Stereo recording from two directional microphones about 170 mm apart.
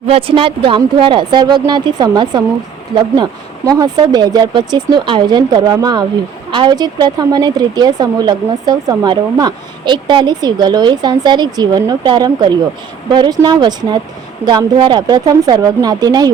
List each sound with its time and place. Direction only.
0.1 s speech: 30° right (ahead or behind)
3.7 s speech: 20° right (ahead or behind)